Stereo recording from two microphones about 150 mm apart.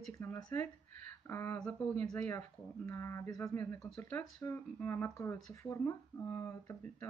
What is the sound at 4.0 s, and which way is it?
Speech, 10° left (ahead or behind).